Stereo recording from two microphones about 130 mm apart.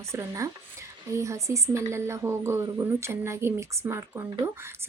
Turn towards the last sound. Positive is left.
turn(degrees=-20)  # may be behind; listen again after turning